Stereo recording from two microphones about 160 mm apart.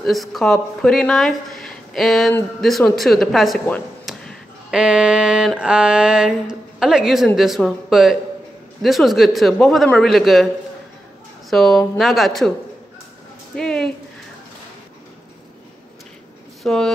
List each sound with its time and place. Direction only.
0.0 s speech: centre (ahead or behind)
4.0 s a sound: centre (ahead or behind)
5.6 s speech: 5° right (ahead or behind)
11.5 s speech: centre (ahead or behind)
13.6 s a sound: 5° left (ahead or behind)
16.6 s speech: 5° left (ahead or behind)